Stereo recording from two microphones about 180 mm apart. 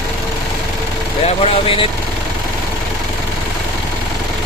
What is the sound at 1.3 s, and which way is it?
Speech, 30° left (ahead or behind).